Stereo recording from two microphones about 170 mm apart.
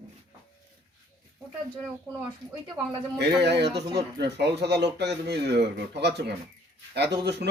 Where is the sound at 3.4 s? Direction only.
80° right.